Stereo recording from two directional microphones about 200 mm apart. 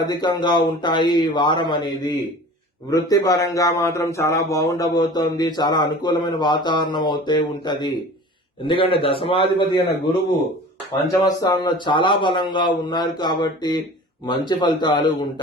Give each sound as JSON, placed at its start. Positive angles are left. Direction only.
{"t": 0.0, "sound": "a man's voice", "side_deg": 20}
{"t": 11.1, "sound": "a man's voice", "side_deg": 20}